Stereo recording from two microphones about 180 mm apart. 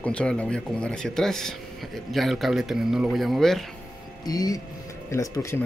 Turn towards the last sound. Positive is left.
turn(degrees=20)  # may be behind; listen again after turning